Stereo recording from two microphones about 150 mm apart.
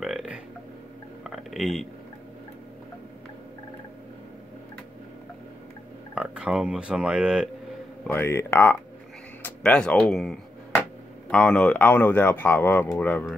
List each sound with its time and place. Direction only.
0.0 s burping: 5° right (ahead or behind)
1.2 s a sound: centre (ahead or behind)
6.1 s speech: 5° right (ahead or behind)
8.1 s speech: 15° left (ahead or behind)